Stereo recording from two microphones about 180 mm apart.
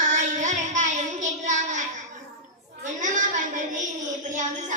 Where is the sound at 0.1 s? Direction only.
45° right (ahead or behind).